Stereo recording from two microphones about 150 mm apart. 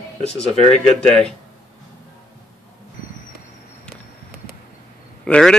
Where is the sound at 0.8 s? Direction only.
5° left (ahead or behind).